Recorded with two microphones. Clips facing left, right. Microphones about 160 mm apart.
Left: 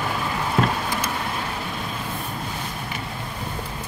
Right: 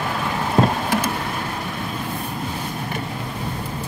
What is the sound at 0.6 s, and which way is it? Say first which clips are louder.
Vehicle: right 4 dB; 30° right (ahead or behind).